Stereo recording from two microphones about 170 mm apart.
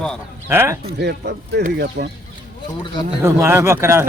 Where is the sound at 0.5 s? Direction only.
15° right (ahead or behind).